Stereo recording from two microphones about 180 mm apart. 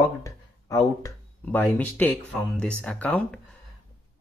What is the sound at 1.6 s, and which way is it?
Speech, 10° left (ahead or behind).